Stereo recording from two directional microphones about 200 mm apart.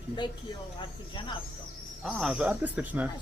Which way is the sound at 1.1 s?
25° left (ahead or behind).